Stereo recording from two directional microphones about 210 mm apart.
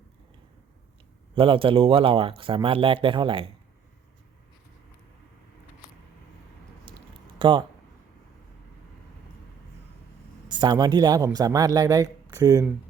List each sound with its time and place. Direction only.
1.4 s speech: 25° right (ahead or behind)
7.3 s speech: 20° right (ahead or behind)
10.5 s speech: 20° right (ahead or behind)